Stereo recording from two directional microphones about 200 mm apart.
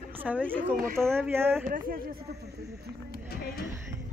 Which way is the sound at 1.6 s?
45° right (ahead or behind).